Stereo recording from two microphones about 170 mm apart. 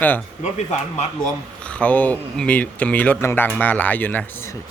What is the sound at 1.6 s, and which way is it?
Speech, 10° left (ahead or behind).